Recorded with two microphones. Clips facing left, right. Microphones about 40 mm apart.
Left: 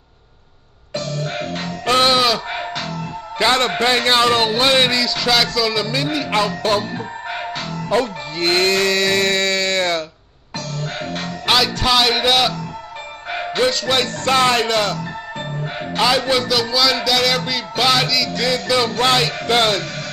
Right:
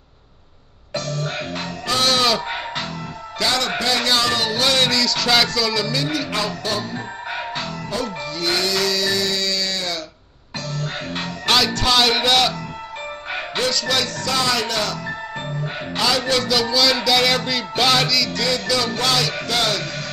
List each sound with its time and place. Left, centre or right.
1.9 s music: left
2.2 s music: centre
2.7 s music: right
3.0 s speech: left; by 5.3 s centre
5.3 s speech: centre
5.9 s speech: left
7.9 s music: left
11.1 s music: centre
11.4 s speech: centre
13.6 s speech: left
16.0 s speech: left
18.9 s speech: left